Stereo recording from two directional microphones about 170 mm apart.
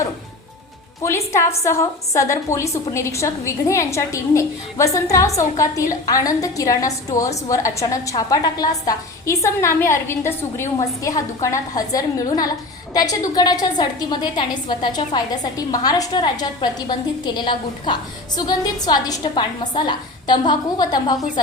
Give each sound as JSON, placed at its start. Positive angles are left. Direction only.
{"t": 1.0, "sound": "a woman's voice", "side_deg": 15}